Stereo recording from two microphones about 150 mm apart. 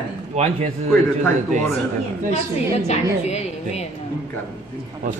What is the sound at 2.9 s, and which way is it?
Speech, 45° left (ahead or behind).